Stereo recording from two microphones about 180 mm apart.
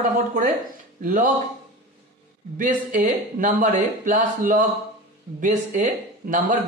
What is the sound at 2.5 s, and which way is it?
Speech, 45° right (ahead or behind).